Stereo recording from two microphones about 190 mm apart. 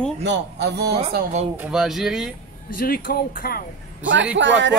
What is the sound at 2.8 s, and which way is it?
Speech, 50° left (ahead or behind).